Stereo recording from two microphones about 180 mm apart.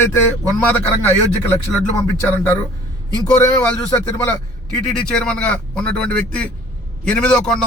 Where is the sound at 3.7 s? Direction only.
20° left (ahead or behind).